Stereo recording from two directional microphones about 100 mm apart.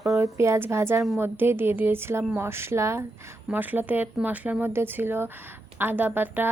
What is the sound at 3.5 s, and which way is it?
A woman's voice, 15° right (ahead or behind).